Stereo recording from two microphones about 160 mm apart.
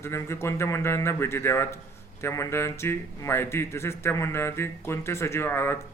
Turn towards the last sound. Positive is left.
turn(degrees=15)  # may be behind; listen again after turning